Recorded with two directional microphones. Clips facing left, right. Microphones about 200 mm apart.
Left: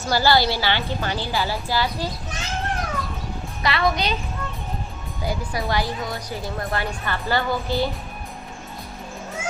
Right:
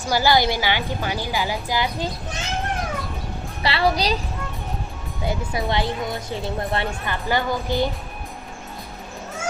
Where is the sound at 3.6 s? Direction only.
30° right (ahead or behind).